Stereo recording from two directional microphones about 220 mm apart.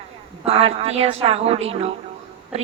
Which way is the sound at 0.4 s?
25° right (ahead or behind).